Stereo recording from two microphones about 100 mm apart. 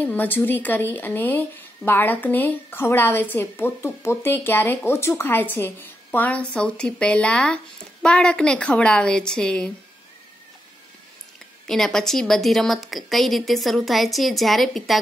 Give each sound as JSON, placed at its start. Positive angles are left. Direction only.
{"t": 0.0, "sound": "a woman's voice", "side_deg": 15}
{"t": 11.6, "sound": "a woman's voice", "side_deg": 5}